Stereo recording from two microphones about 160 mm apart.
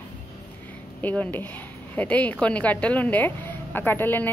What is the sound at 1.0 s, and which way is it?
A woman's voice, 10° left (ahead or behind).